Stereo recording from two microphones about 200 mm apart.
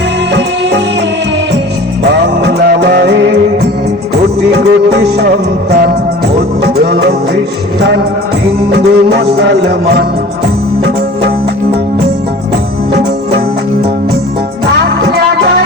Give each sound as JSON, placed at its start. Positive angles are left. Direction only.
{"t": 2.2, "sound": "music", "side_deg": -55}
{"t": 6.6, "sound": "music", "side_deg": -55}
{"t": 14.8, "sound": "music", "side_deg": -55}